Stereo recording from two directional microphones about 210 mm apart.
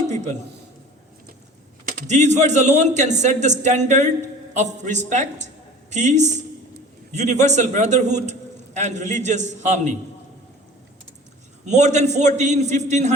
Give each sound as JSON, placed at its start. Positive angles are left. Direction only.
{"t": 1.8, "sound": "a man's voice", "side_deg": -40}
{"t": 11.6, "sound": "a man's voice", "side_deg": -35}